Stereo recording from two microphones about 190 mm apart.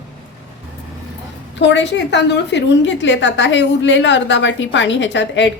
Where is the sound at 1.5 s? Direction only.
70° left (ahead or behind).